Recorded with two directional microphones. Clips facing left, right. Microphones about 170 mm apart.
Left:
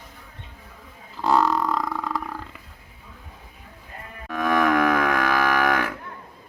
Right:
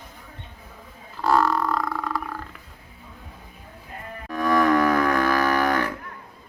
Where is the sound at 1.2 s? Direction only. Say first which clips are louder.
Even; 20° left (ahead or behind).